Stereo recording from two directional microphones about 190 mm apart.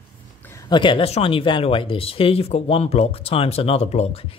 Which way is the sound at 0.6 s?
25° left (ahead or behind).